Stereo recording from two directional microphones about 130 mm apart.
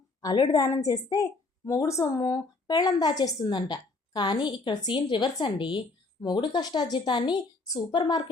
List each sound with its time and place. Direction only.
0.2 s a woman's voice: 30° left (ahead or behind)
7.9 s a woman's voice: 40° left (ahead or behind)